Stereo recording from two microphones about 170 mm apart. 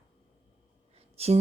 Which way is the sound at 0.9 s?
35° right (ahead or behind).